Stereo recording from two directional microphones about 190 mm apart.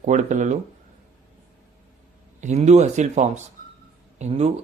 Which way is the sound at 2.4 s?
35° right (ahead or behind).